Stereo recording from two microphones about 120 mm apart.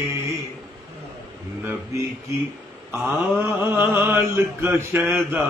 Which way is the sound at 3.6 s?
15° right (ahead or behind).